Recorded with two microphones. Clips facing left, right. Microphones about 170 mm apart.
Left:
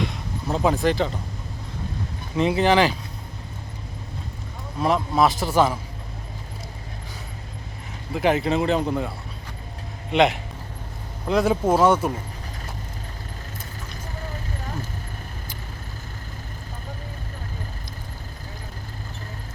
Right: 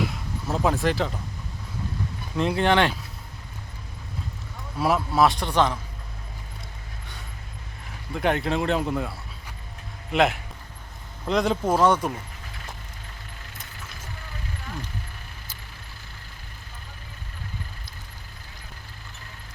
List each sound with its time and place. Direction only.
0.0 s a sound: centre (ahead or behind)
2.3 s speech: centre (ahead or behind)
5.1 s speech: centre (ahead or behind)
8.1 s speech: centre (ahead or behind)
14.2 s vehicle: 40° left (ahead or behind)